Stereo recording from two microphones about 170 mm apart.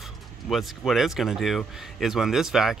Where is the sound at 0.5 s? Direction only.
Centre (ahead or behind).